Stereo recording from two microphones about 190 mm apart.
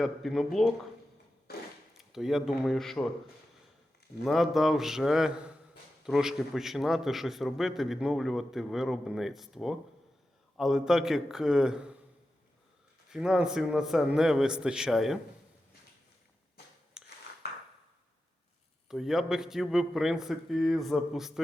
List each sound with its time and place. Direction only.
0.0 s a man's voice: centre (ahead or behind)
1.5 s a sound: 55° left (ahead or behind)
1.9 s speech: centre (ahead or behind)
4.2 s a man's voice: centre (ahead or behind)
13.1 s a man's voice: 5° right (ahead or behind)
17.0 s a sound: 5° right (ahead or behind)
18.9 s a man's voice: centre (ahead or behind)